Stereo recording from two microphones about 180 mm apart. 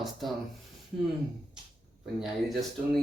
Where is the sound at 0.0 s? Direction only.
Centre (ahead or behind).